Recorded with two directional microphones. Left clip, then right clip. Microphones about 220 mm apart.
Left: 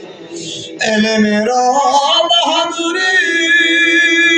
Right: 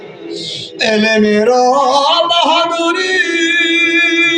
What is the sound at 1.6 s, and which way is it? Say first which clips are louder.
Music: right 1 dB; 15° right (ahead or behind).